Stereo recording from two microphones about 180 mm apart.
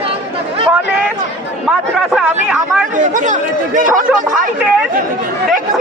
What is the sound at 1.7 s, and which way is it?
Speech, 5° right (ahead or behind).